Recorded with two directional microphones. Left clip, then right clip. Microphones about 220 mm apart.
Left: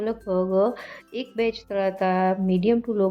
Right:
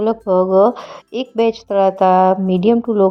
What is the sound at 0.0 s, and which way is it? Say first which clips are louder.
A woman's voice: right 10 dB; 25° right (ahead or behind).